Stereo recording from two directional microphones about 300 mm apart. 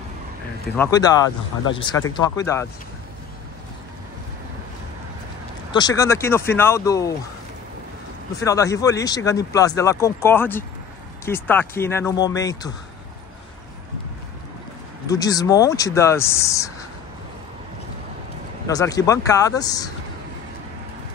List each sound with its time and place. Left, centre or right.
0.7 s speech: centre
5.7 s speech: centre
8.4 s speech: centre
15.0 s speech: centre
18.7 s speech: centre